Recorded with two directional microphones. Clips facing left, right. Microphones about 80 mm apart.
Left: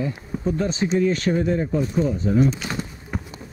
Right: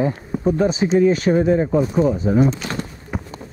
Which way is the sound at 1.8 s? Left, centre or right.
Right.